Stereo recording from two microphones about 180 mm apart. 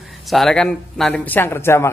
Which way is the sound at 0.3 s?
Centre (ahead or behind).